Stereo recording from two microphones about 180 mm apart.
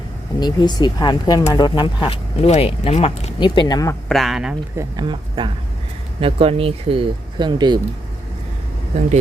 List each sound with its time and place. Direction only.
0.3 s speech: 25° left (ahead or behind)
4.1 s speech: centre (ahead or behind)
4.8 s speech: 25° right (ahead or behind)